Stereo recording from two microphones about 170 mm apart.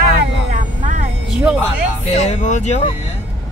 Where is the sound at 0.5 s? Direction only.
45° right (ahead or behind).